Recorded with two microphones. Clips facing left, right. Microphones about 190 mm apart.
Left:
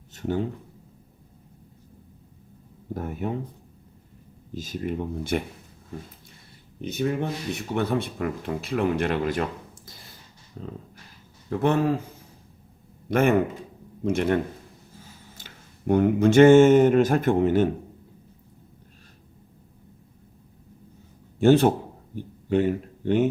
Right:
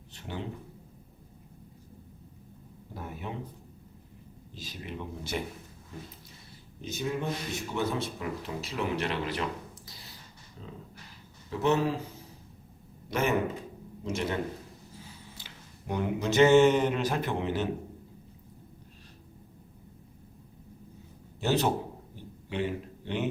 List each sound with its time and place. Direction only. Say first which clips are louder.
0.1 s a sound: left 12 dB; 45° left (ahead or behind)
2.9 s speech: left 9 dB; 50° left (ahead or behind)
4.5 s speech: left 11 dB; 45° left (ahead or behind)
6.8 s speech: left 6 dB; 60° left (ahead or behind)
9.8 s a sound: left 2 dB; 50° left (ahead or behind)
10.6 s speech: left 7 dB; 50° left (ahead or behind)
13.1 s speech: left 7 dB; 55° left (ahead or behind)
15.4 s speech: left 1 dB; 50° left (ahead or behind)
21.3 s a man's voice: left 10 dB; 50° left (ahead or behind)